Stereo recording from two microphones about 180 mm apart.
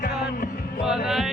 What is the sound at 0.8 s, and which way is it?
Music, 5° right (ahead or behind).